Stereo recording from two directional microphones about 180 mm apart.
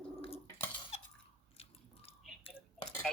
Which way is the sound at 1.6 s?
35° left (ahead or behind).